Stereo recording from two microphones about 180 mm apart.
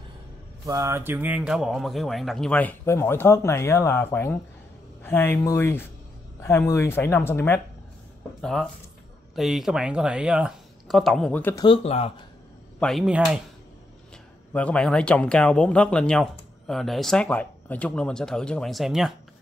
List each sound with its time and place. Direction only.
0.7 s speech: 15° right (ahead or behind); by 7.6 s 15° left (ahead or behind)
8.4 s speech: 5° left (ahead or behind)
11.6 s speech: 30° left (ahead or behind)
12.8 s speech: centre (ahead or behind)
14.5 s speech: 5° left (ahead or behind)